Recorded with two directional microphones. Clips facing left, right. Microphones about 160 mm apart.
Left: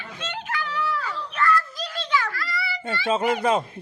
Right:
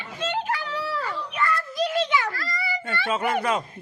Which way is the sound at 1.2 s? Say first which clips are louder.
Left 7 dB; 15° right (ahead or behind).